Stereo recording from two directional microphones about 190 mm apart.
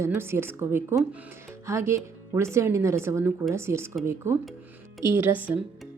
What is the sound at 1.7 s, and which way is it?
A woman's voice, 15° right (ahead or behind).